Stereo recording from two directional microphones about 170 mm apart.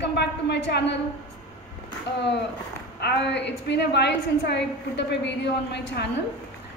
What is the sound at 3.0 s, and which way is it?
A woman's voice, 75° left (ahead or behind).